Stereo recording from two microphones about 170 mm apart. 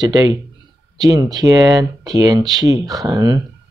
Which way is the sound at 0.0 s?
25° right (ahead or behind).